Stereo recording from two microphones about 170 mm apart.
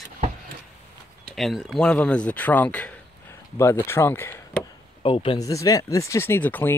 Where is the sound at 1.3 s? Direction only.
Centre (ahead or behind).